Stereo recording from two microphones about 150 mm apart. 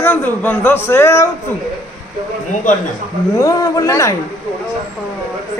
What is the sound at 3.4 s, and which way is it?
Speech, 25° left (ahead or behind).